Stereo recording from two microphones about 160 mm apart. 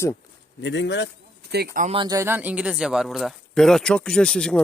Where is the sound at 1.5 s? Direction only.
90° right.